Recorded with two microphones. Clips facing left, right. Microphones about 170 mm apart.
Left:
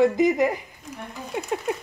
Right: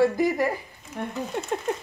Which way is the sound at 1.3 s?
5° left (ahead or behind).